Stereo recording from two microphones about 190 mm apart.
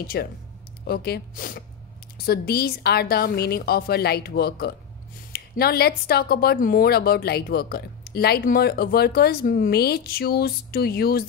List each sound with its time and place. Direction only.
0.0 s speech: 55° left (ahead or behind)